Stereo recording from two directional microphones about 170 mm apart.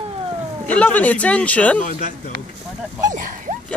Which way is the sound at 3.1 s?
50° right (ahead or behind).